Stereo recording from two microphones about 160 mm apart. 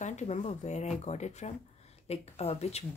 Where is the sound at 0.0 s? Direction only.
45° left (ahead or behind).